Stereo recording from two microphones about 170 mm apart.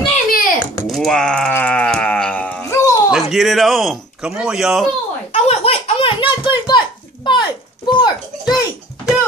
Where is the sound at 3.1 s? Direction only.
Centre (ahead or behind).